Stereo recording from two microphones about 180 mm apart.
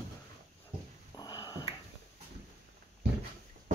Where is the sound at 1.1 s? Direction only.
20° left (ahead or behind).